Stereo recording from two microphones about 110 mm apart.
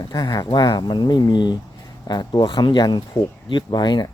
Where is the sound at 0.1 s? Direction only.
40° left (ahead or behind).